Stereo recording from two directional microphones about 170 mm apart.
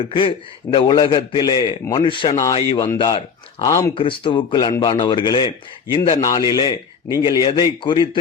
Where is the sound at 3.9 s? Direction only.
30° left (ahead or behind).